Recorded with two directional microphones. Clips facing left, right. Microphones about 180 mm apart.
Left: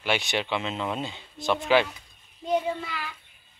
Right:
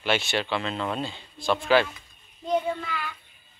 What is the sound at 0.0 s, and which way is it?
Speech, 15° left (ahead or behind).